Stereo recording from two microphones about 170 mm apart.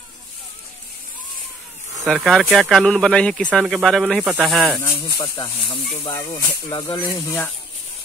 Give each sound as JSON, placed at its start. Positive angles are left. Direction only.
{"t": 2.0, "sound": "speech", "side_deg": 0}
{"t": 5.0, "sound": "speech", "side_deg": 25}